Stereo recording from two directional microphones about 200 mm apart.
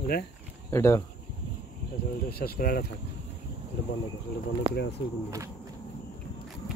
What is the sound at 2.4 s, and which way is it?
Speech, 45° left (ahead or behind).